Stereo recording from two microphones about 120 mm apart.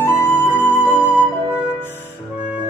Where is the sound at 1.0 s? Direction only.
15° right (ahead or behind).